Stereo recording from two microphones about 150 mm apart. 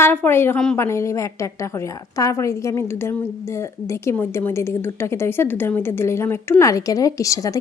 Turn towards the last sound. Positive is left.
turn(degrees=20)  # may be behind; listen again after turning